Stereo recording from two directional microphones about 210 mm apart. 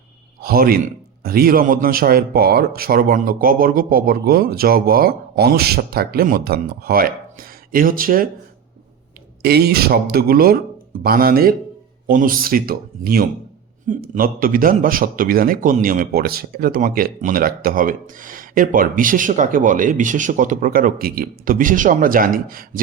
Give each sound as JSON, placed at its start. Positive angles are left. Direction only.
{"t": 0.4, "sound": "speech", "side_deg": -45}
{"t": 9.4, "sound": "a man's voice", "side_deg": -50}